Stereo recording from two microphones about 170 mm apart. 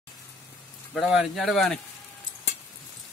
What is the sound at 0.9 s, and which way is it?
Speech, centre (ahead or behind).